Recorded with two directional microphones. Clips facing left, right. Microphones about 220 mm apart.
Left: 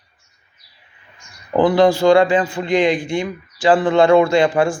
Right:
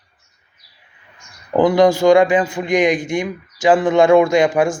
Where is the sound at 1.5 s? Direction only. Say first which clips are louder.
Right 1 dB; 15° right (ahead or behind).